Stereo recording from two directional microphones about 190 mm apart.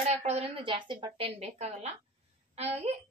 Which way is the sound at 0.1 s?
35° right (ahead or behind).